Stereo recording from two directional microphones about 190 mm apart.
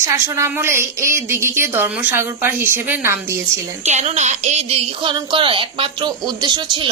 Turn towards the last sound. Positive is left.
turn(degrees=-25)  # may be behind; listen again after turning